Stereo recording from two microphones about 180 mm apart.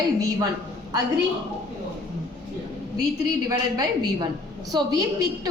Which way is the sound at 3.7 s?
20° right (ahead or behind).